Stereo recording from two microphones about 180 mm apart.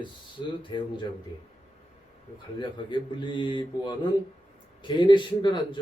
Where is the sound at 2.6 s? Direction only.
25° left (ahead or behind).